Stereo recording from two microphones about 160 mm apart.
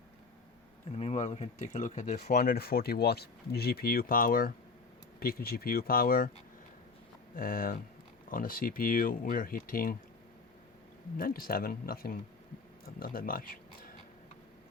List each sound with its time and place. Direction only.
0.9 s speech: 45° left (ahead or behind)
2.3 s speech: 70° left (ahead or behind)
7.3 s speech: 60° left (ahead or behind)
11.2 s speech: 65° left (ahead or behind)